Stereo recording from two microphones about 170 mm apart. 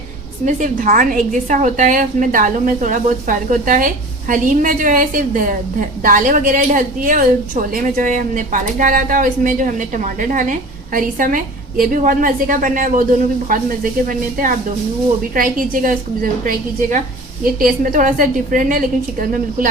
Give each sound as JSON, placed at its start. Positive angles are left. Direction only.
{"t": 0.4, "sound": "a woman's voice", "side_deg": -50}